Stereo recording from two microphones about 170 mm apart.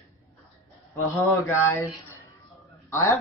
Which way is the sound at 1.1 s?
15° left (ahead or behind).